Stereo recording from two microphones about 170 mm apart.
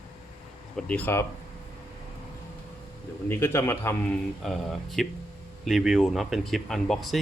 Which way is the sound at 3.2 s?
15° left (ahead or behind).